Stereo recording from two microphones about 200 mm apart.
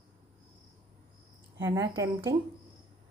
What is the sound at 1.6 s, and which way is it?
Speech, 15° right (ahead or behind).